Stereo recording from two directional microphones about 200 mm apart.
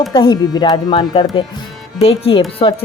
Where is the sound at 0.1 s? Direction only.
25° left (ahead or behind).